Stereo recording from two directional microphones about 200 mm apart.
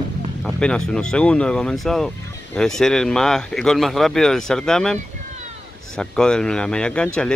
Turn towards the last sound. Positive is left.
turn(degrees=5)  # may be behind; listen again after turning